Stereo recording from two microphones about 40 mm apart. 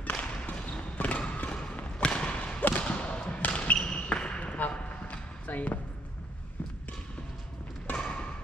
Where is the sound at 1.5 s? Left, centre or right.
Left.